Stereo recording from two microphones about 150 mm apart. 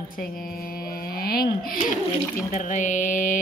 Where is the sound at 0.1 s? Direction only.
70° left (ahead or behind).